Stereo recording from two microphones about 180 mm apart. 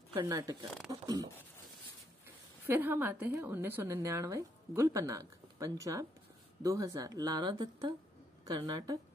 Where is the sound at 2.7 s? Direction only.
10° right (ahead or behind).